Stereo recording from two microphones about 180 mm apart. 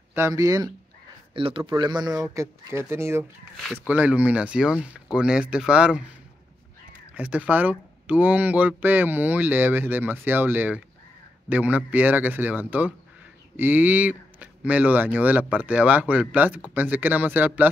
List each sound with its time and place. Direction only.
0.1 s speech: 15° right (ahead or behind)
1.3 s speech: 30° right (ahead or behind); by 6.0 s 5° right (ahead or behind)
7.2 s speech: 5° right (ahead or behind)